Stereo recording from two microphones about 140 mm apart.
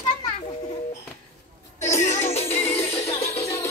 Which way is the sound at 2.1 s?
50° left (ahead or behind).